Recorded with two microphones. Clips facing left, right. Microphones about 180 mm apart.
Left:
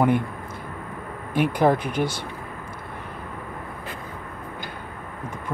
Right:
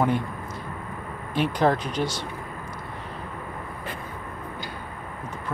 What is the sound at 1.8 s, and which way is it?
Speech, 55° left (ahead or behind).